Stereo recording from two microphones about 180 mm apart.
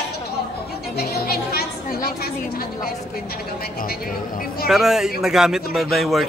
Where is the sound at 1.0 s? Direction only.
60° left (ahead or behind).